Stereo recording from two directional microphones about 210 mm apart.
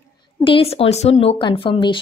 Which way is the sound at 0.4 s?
25° left (ahead or behind).